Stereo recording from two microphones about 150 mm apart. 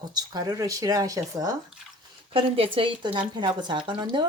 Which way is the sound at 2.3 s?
35° right (ahead or behind).